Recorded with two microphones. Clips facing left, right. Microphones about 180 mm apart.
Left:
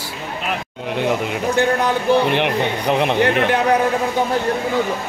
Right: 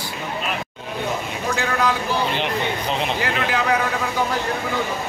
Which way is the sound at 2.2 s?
60° left (ahead or behind).